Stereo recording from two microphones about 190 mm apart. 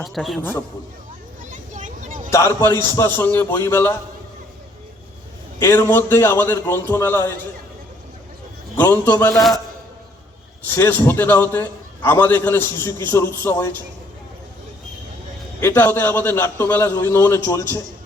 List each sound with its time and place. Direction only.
0.0 s a man's voice: centre (ahead or behind)
1.5 s vehicle: 40° right (ahead or behind)
2.3 s a man's voice: 15° left (ahead or behind)
5.5 s a man's voice: 15° left (ahead or behind)
8.7 s a man's voice: 10° left (ahead or behind)
9.3 s a man's voice: centre (ahead or behind)
10.8 s a man's voice: 10° left (ahead or behind)
15.6 s a man's voice: 10° left (ahead or behind)